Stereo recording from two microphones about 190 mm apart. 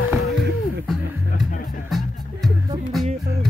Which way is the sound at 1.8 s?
Centre (ahead or behind).